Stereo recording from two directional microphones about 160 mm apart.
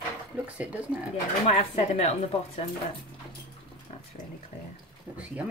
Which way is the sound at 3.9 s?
40° left (ahead or behind).